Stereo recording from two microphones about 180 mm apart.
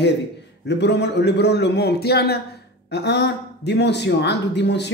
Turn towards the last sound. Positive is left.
turn(degrees=70)  # may be behind; listen again after turning